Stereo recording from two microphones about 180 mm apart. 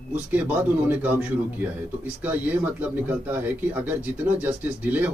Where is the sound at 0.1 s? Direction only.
10° right (ahead or behind).